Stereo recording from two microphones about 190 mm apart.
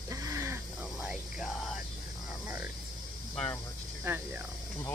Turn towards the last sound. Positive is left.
turn(degrees=-10)  # may be behind; listen again after turning